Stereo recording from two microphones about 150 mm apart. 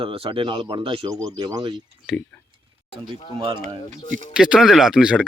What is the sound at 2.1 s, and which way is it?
Speech, centre (ahead or behind).